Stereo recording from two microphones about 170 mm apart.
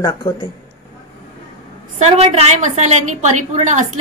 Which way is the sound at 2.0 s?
40° right (ahead or behind).